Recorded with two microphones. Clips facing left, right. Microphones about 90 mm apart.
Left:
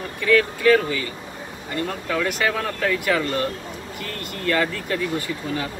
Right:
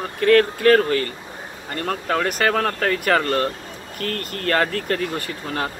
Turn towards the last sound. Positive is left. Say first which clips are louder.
# right 1 dB
turn(degrees=-50)  # may be behind; listen again after turning